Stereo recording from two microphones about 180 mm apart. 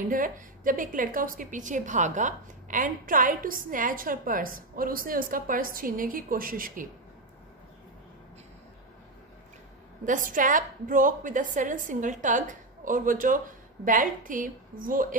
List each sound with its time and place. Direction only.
0.1 s a woman's voice: 50° right (ahead or behind)
10.0 s a woman's voice: 45° right (ahead or behind)